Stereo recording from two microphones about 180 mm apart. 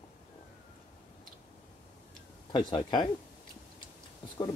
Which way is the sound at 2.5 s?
25° left (ahead or behind).